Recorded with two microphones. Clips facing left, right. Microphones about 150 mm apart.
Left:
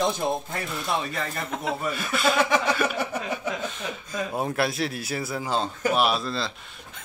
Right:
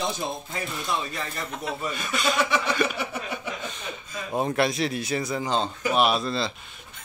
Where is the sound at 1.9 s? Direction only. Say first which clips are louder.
Left 2 dB; 5° left (ahead or behind).